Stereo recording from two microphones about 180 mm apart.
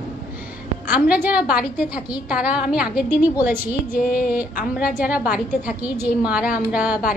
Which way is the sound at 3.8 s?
55° left (ahead or behind).